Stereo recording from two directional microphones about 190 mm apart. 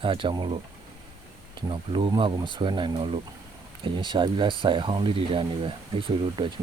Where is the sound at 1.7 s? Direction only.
25° right (ahead or behind).